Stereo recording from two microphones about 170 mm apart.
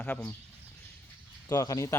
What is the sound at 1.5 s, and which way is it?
Speech, 20° left (ahead or behind).